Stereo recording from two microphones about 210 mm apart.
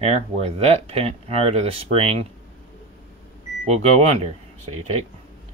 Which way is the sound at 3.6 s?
30° right (ahead or behind).